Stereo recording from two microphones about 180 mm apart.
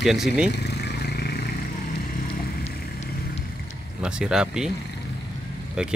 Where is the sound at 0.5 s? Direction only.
65° left (ahead or behind).